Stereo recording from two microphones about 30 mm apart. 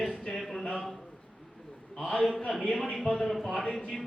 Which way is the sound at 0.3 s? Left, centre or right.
Centre.